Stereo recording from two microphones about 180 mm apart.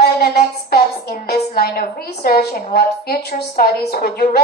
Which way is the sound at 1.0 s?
60° left (ahead or behind).